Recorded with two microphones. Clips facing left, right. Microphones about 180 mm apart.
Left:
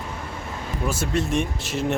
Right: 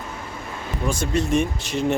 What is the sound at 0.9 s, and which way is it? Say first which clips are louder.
Speech: right 3 dB; 5° left (ahead or behind).